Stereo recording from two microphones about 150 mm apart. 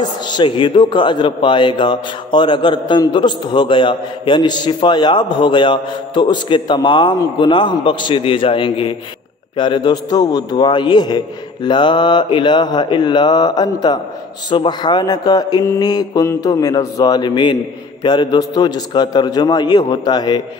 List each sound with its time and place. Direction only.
0.0 s a man's voice: 30° left (ahead or behind)